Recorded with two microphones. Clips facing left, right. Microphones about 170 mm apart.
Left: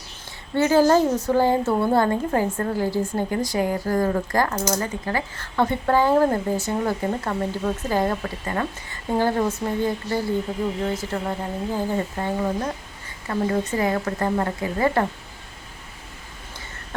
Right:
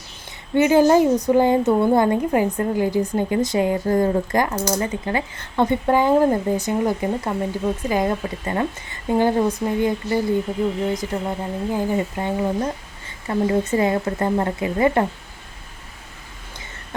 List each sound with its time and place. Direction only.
0.5 s speech: 15° right (ahead or behind)